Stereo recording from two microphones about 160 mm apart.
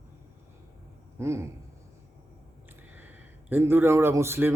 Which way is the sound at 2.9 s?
10° right (ahead or behind).